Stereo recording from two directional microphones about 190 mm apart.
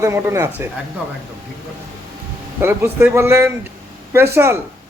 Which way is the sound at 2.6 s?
10° right (ahead or behind).